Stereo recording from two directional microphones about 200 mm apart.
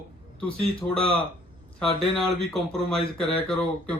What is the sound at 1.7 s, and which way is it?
Speech, 5° left (ahead or behind).